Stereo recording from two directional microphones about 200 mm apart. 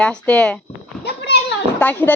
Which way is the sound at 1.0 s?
55° left (ahead or behind).